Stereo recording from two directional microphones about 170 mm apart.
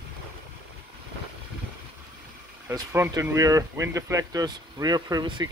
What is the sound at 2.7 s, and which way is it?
Speech, 15° right (ahead or behind).